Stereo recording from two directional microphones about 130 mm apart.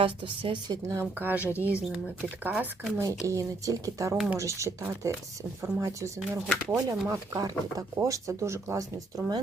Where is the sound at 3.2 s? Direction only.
25° right (ahead or behind).